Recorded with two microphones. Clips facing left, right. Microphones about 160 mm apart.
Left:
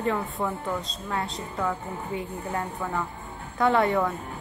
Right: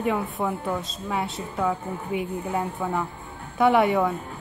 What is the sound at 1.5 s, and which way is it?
Speech, 15° right (ahead or behind).